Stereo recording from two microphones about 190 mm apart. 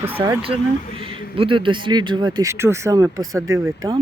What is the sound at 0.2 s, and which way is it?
Speech, 30° right (ahead or behind).